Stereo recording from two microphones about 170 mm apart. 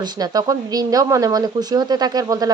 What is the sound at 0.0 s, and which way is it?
Speech, 25° right (ahead or behind).